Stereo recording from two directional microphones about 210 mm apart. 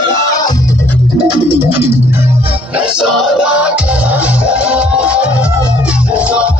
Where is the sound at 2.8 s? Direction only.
Centre (ahead or behind).